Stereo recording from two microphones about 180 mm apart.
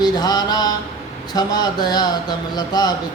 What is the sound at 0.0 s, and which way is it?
Mantra, 20° left (ahead or behind).